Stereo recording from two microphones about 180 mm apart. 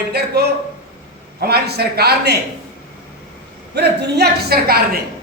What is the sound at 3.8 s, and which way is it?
A woman's voice, 65° right (ahead or behind).